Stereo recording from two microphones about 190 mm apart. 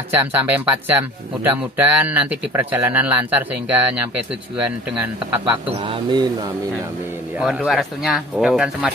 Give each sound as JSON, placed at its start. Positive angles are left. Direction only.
{"t": 0.1, "sound": "speech", "side_deg": -10}
{"t": 5.9, "sound": "speech", "side_deg": -25}
{"t": 7.3, "sound": "speech", "side_deg": -5}